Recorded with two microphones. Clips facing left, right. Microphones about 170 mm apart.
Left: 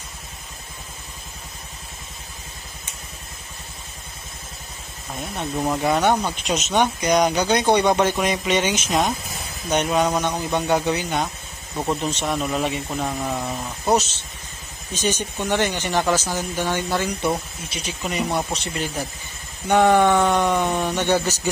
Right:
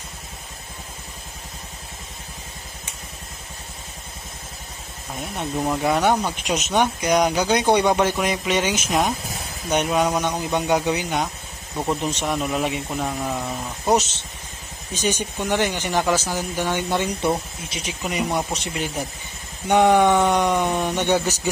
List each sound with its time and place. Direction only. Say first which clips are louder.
5.4 s speech: even; centre (ahead or behind)
14.9 s speech: even; 10° right (ahead or behind)
18.0 s speech: even; 10° right (ahead or behind)